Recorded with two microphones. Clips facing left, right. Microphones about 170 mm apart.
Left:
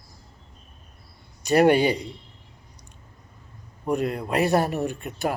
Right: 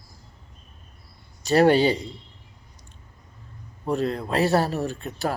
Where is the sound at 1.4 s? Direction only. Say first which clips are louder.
Even; 15° left (ahead or behind).